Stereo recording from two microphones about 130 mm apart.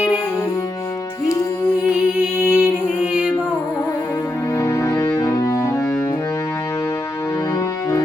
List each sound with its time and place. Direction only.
1.9 s music: 15° right (ahead or behind)
4.5 s music: 20° left (ahead or behind)